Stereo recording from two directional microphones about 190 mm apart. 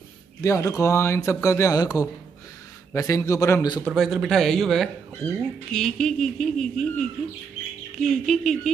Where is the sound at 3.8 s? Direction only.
Centre (ahead or behind).